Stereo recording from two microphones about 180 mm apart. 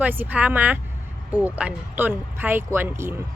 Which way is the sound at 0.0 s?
10° right (ahead or behind).